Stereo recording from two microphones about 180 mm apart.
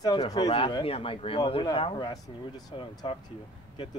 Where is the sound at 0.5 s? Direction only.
30° left (ahead or behind).